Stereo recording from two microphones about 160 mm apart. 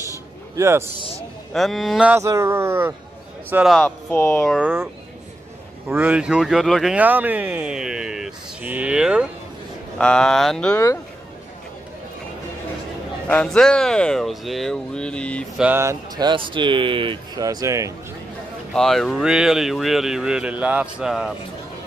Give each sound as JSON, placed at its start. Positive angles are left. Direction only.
{"t": 0.6, "sound": "speech", "side_deg": -15}
{"t": 1.5, "sound": "speech", "side_deg": 0}
{"t": 2.1, "sound": "speech", "side_deg": -15}
{"t": 5.9, "sound": "speech", "side_deg": -10}
{"t": 9.9, "sound": "speech", "side_deg": 5}
{"t": 13.3, "sound": "speech", "side_deg": 5}
{"t": 15.5, "sound": "speech", "side_deg": -10}
{"t": 16.3, "sound": "speech", "side_deg": -30}
{"t": 18.7, "sound": "speech", "side_deg": 0}